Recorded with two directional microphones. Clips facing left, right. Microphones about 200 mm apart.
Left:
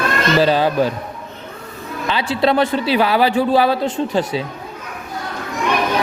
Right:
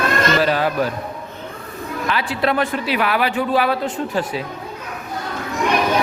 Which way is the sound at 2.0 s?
30° left (ahead or behind).